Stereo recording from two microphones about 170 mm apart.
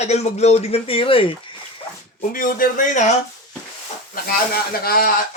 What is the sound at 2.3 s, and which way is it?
Speech, 55° left (ahead or behind).